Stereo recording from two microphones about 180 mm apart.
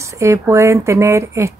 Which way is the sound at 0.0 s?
15° right (ahead or behind).